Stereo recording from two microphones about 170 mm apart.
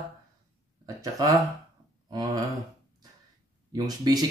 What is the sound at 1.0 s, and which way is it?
Speech, 20° right (ahead or behind).